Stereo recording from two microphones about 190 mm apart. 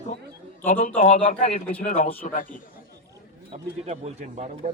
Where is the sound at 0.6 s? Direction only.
40° left (ahead or behind).